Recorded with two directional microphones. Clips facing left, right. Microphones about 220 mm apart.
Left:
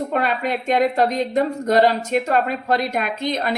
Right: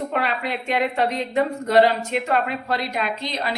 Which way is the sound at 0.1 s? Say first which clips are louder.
Left 3 dB; 45° left (ahead or behind).